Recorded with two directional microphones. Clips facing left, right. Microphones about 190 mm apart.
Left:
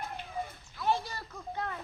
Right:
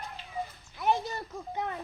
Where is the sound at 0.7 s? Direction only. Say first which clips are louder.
Right 3 dB; 20° right (ahead or behind).